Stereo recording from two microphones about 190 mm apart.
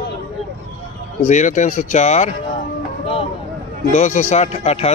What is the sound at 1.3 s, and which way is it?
Speech, 40° left (ahead or behind).